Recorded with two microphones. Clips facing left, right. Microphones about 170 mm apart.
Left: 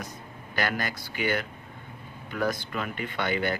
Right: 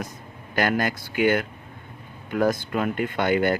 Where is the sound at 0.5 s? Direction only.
50° right (ahead or behind).